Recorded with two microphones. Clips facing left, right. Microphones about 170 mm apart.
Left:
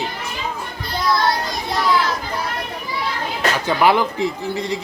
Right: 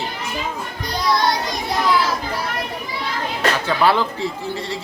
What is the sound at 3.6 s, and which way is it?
Speech, 15° left (ahead or behind).